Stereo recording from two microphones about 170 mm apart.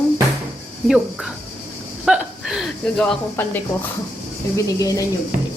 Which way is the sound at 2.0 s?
5° right (ahead or behind).